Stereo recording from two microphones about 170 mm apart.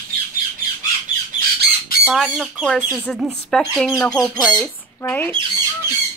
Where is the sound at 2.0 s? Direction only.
Centre (ahead or behind).